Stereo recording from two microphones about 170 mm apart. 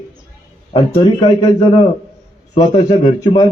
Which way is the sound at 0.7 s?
30° left (ahead or behind).